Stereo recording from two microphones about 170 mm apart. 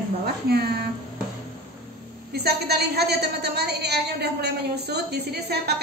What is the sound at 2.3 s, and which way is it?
A woman's voice, 70° right (ahead or behind).